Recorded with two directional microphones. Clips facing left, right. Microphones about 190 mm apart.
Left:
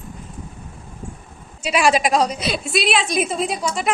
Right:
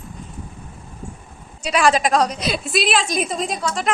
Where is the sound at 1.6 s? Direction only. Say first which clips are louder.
Even; 5° left (ahead or behind).